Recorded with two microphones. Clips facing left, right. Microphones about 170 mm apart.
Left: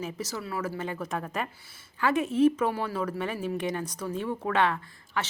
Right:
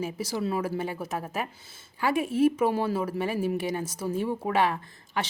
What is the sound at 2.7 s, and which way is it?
Speech, 25° right (ahead or behind).